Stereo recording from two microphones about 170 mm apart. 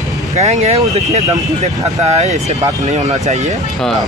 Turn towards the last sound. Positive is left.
turn(degrees=-40)  # may be behind; listen again after turning